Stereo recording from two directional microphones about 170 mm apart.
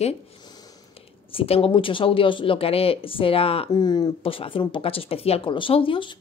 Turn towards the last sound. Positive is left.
turn(degrees=30)  # may be behind; listen again after turning